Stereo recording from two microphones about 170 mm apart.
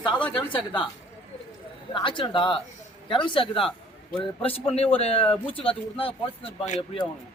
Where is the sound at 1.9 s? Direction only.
30° left (ahead or behind).